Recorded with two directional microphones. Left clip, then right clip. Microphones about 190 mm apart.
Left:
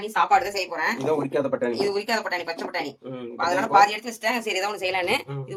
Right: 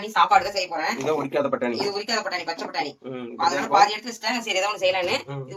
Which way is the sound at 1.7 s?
65° left (ahead or behind).